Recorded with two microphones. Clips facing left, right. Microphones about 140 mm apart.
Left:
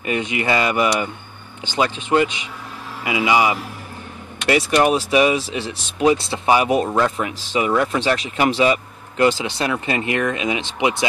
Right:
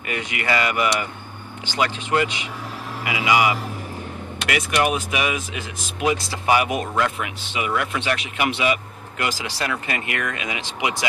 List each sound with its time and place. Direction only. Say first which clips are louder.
0.0 s speech: left 6 dB; 25° left (ahead or behind)
9.2 s speech: left 8 dB; 25° left (ahead or behind)